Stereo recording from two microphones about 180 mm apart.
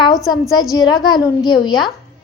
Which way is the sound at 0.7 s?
20° left (ahead or behind).